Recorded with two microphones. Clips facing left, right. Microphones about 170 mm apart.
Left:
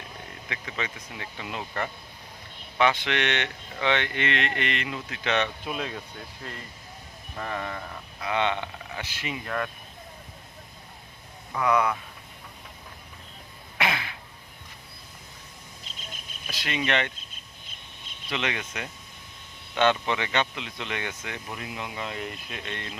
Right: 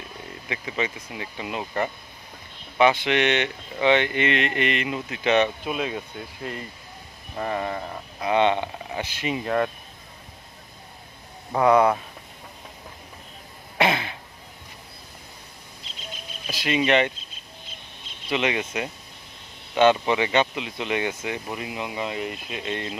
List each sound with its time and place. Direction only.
0.4 s speech: 15° right (ahead or behind)
7.3 s speech: 25° right (ahead or behind)
11.5 s speech: 35° right (ahead or behind)
13.7 s throat clearing: 25° right (ahead or behind)
16.5 s speech: 10° right (ahead or behind)
18.3 s speech: 15° right (ahead or behind)